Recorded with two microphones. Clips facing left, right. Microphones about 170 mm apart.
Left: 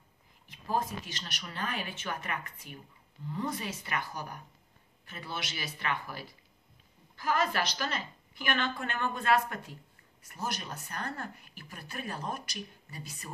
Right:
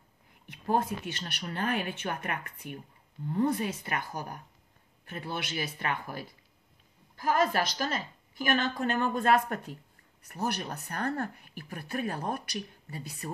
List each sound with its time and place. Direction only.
0.5 s a woman's voice: 60° right (ahead or behind)
10.2 s speech: 60° right (ahead or behind)
13.2 s speech: 40° right (ahead or behind)